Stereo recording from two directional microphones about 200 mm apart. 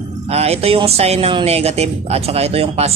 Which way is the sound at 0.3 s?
30° right (ahead or behind).